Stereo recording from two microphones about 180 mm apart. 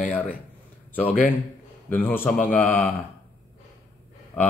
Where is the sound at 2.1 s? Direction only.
10° left (ahead or behind).